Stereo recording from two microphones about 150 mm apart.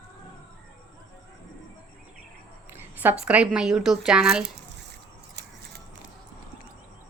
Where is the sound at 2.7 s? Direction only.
15° right (ahead or behind).